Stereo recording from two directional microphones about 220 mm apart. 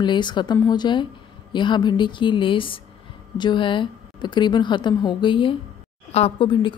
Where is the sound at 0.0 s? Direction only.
20° left (ahead or behind).